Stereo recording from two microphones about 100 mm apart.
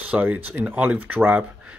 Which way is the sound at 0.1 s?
15° right (ahead or behind).